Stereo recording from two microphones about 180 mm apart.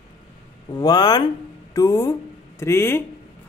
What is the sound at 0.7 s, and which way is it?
A man's voice, 20° left (ahead or behind).